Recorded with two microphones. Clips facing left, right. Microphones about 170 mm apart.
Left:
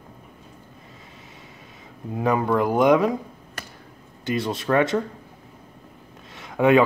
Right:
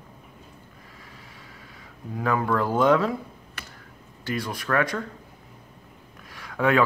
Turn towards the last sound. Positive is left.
turn(degrees=20)  # may be behind; listen again after turning